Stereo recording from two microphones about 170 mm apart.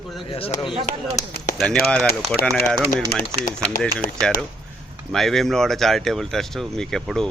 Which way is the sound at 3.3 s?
20° right (ahead or behind).